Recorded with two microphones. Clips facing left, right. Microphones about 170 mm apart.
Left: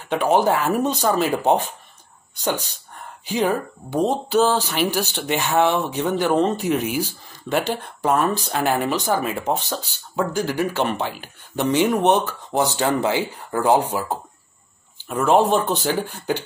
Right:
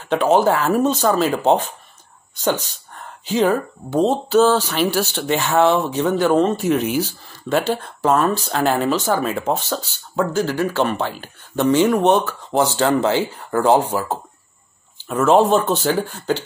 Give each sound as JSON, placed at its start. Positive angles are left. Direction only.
{"t": 0.1, "sound": "speech", "side_deg": 15}
{"t": 15.1, "sound": "speech", "side_deg": 15}